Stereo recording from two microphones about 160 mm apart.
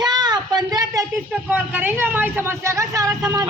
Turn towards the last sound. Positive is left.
turn(degrees=-20)  # may be behind; listen again after turning